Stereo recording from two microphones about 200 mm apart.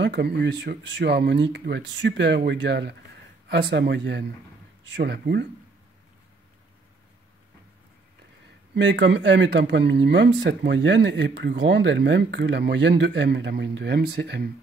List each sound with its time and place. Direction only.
0.0 s speech: 60° right (ahead or behind)
8.7 s speech: 65° right (ahead or behind)